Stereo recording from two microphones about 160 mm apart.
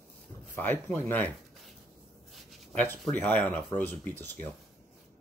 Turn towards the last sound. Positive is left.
turn(degrees=10)  # may be behind; listen again after turning